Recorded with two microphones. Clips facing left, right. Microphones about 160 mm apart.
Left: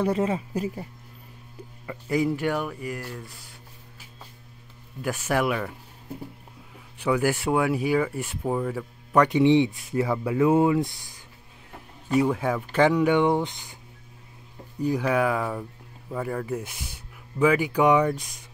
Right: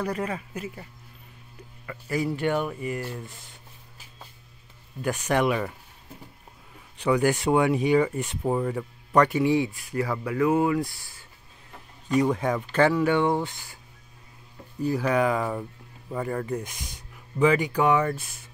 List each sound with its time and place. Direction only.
0.0 s speech: 25° left (ahead or behind)
1.9 s speech: 15° left (ahead or behind)
2.4 s speech: centre (ahead or behind)
5.2 s speech: 5° left (ahead or behind)
7.0 s speech: 5° left (ahead or behind)
9.1 s speech: 10° left (ahead or behind)
9.4 s speech: 20° left (ahead or behind)
12.1 s speech: 5° left (ahead or behind)
14.8 s speech: 10° left (ahead or behind)